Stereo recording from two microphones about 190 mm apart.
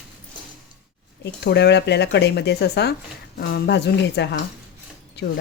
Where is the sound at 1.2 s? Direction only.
65° left (ahead or behind).